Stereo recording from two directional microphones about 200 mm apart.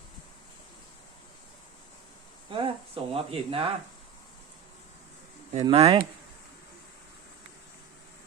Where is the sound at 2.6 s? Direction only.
30° right (ahead or behind).